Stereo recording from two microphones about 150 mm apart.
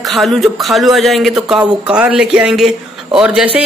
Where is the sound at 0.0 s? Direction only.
Centre (ahead or behind).